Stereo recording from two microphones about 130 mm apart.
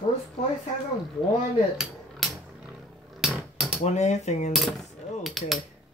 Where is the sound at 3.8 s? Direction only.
60° left (ahead or behind).